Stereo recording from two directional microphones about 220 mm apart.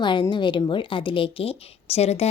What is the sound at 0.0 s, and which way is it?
A woman's voice, 20° left (ahead or behind).